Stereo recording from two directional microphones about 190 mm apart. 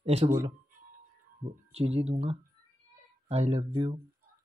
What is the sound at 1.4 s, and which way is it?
Speech, 30° right (ahead or behind).